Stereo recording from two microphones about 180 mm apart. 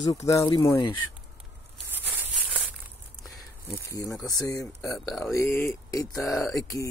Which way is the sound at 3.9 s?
20° left (ahead or behind).